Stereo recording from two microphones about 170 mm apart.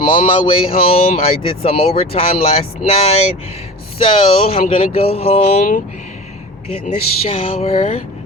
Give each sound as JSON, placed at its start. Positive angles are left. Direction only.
{"t": 0.0, "sound": "speech", "side_deg": 30}
{"t": 6.8, "sound": "speech", "side_deg": 35}